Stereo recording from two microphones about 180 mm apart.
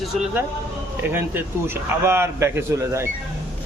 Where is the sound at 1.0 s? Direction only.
10° right (ahead or behind).